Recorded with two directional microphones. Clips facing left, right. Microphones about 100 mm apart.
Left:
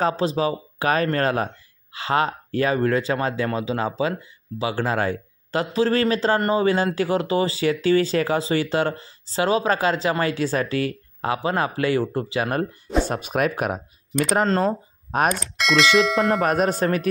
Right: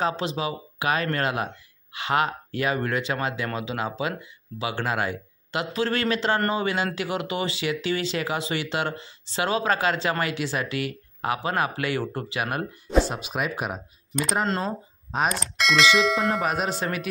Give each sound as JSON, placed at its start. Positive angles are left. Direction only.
{"t": 0.0, "sound": "speech", "side_deg": 35}
{"t": 13.1, "sound": "speech", "side_deg": 55}
{"t": 15.2, "sound": "speech", "side_deg": 0}
{"t": 16.5, "sound": "speech", "side_deg": 45}